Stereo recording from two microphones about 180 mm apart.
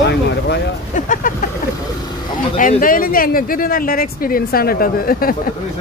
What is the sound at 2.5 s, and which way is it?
Speech, 50° left (ahead or behind).